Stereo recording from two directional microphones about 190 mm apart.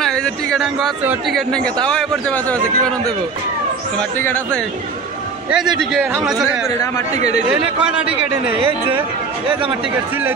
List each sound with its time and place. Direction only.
0.0 s speech: 5° left (ahead or behind)
4.2 s speech: 10° left (ahead or behind)
5.5 s speech: centre (ahead or behind)
7.8 s speech: 5° right (ahead or behind)
8.5 s speech: 30° right (ahead or behind)